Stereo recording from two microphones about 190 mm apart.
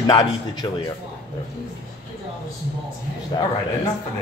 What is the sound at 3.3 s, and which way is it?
Speech, 20° left (ahead or behind).